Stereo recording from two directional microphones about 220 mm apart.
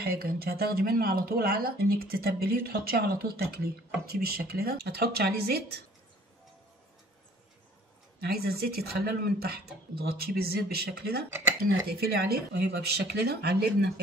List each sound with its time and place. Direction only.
0.0 s speech: 45° right (ahead or behind)
8.2 s speech: 45° right (ahead or behind)